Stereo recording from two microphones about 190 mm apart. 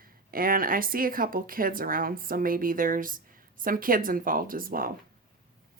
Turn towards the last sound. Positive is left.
turn(degrees=-50)  # may be behind; listen again after turning